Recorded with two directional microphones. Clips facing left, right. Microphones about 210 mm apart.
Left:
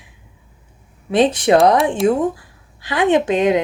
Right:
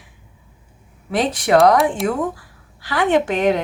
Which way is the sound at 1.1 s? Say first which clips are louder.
Left 4 dB; 25° left (ahead or behind).